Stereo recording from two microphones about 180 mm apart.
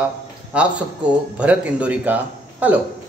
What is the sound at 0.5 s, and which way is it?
Speech, 5° right (ahead or behind).